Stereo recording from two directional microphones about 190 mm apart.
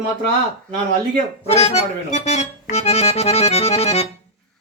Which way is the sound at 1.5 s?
35° left (ahead or behind).